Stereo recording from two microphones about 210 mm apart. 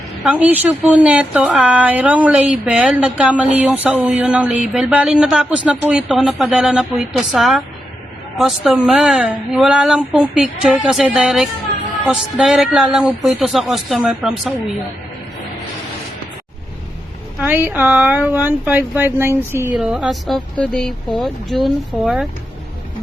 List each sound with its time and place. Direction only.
0.3 s speech: 5° right (ahead or behind)
17.4 s speech: 10° right (ahead or behind)